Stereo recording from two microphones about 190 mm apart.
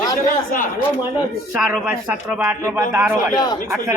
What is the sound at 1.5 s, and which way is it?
A man's voice, 10° right (ahead or behind).